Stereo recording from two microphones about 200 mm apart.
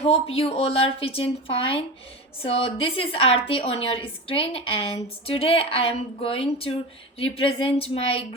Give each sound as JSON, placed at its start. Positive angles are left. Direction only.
{"t": 0.0, "sound": "a woman's voice", "side_deg": 30}